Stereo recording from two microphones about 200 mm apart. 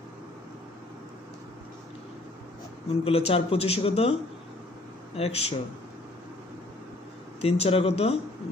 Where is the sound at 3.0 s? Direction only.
30° left (ahead or behind).